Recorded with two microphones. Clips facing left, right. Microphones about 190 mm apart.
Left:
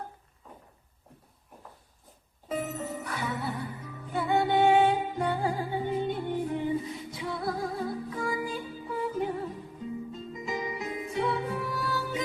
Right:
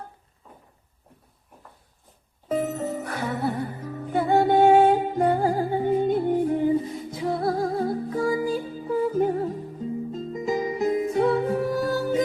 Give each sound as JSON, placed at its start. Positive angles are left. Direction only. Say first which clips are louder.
{"t": 2.5, "sound": "music", "louder": "right 7 dB", "side_deg": -40}